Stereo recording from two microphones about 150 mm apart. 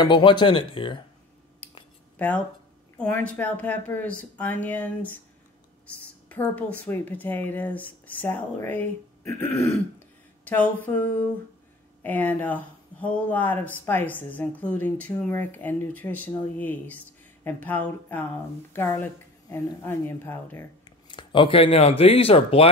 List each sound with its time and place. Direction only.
0.0 s speech: 30° left (ahead or behind)
2.1 s speech: 10° left (ahead or behind)
6.2 s speech: 10° left (ahead or behind)
21.1 s speech: 30° left (ahead or behind)